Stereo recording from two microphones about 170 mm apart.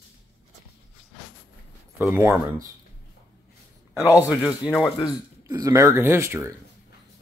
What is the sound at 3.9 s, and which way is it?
Speech, 20° left (ahead or behind).